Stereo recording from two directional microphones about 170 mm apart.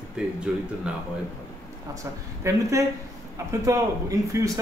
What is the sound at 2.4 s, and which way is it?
A man's voice, 20° right (ahead or behind).